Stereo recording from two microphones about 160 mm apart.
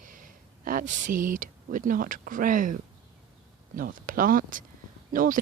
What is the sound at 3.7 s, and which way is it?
Speech, 60° right (ahead or behind).